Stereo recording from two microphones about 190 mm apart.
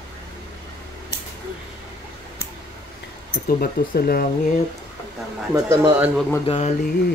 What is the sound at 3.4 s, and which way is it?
Speech, 50° left (ahead or behind).